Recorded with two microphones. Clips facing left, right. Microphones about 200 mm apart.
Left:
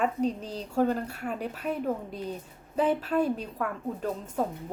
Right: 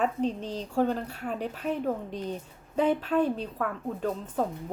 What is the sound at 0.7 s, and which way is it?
A woman's voice, 5° left (ahead or behind).